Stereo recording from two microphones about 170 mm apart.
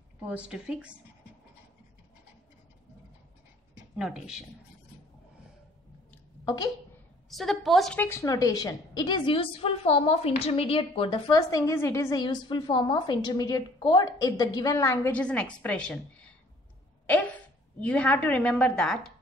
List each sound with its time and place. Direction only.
0.2 s a woman's voice: 5° right (ahead or behind)
3.9 s speech: 5° right (ahead or behind)
6.4 s a woman's voice: 25° left (ahead or behind)
7.2 s a woman's voice: centre (ahead or behind)